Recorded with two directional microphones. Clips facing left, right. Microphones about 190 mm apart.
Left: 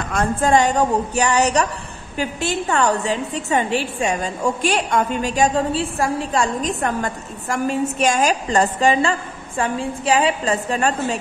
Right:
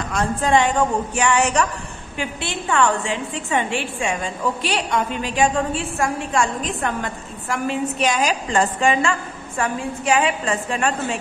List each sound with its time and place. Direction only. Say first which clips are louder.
0.1 s a woman's voice: left 2 dB; 50° left (ahead or behind)